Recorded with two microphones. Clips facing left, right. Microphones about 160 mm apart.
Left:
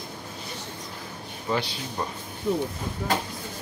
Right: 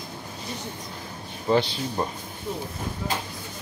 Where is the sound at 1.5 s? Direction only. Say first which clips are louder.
Right 6 dB; 30° right (ahead or behind).